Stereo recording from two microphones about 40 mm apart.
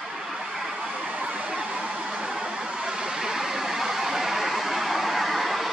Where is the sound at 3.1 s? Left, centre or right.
Centre.